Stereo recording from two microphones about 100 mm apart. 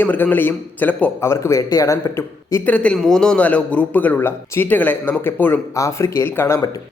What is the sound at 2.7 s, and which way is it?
Speech, 10° left (ahead or behind).